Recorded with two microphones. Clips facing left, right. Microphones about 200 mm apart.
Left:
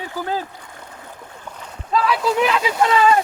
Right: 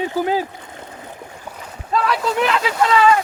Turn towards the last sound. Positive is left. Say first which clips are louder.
# right 1 dB
turn(degrees=25)  # may be behind; listen again after turning